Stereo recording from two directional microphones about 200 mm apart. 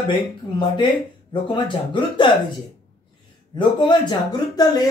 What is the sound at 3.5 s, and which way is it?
Speech, 20° left (ahead or behind).